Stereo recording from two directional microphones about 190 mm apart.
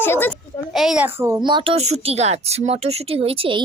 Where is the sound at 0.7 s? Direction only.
Centre (ahead or behind).